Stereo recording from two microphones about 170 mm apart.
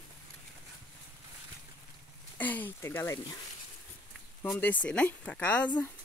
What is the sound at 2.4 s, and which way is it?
Speech, 10° left (ahead or behind).